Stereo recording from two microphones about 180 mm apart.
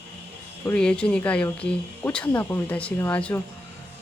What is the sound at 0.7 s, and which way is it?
Speech, 5° left (ahead or behind).